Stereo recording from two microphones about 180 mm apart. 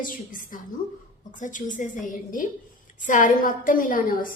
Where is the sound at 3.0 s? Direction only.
45° left (ahead or behind).